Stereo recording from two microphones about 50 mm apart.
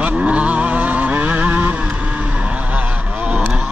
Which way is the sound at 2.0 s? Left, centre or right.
Right.